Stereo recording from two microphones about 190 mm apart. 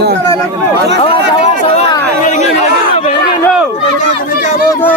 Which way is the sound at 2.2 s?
40° left (ahead or behind).